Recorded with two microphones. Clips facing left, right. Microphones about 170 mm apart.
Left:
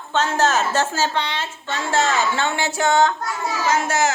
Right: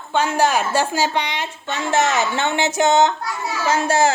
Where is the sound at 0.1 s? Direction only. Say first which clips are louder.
Right 1 dB; 10° right (ahead or behind).